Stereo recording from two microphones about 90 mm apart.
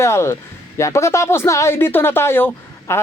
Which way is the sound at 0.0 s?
30° left (ahead or behind).